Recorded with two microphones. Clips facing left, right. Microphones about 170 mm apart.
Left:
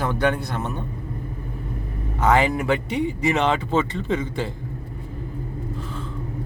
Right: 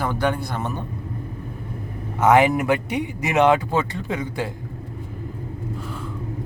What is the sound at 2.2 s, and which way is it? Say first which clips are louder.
Speech: right 3 dB; 15° right (ahead or behind).